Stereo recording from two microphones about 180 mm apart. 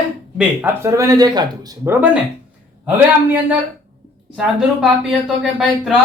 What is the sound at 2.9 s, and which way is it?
A man's voice, 10° right (ahead or behind).